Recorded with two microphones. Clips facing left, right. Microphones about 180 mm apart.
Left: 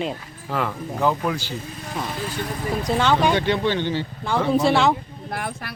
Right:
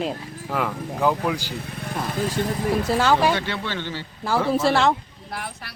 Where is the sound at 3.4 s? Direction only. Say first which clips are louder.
Left 7 dB; 20° left (ahead or behind).